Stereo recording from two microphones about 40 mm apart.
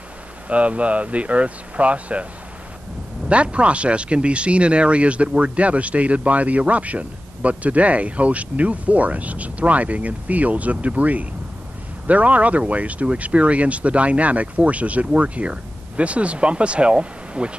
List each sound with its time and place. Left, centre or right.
0.5 s speech: right
3.3 s speech: right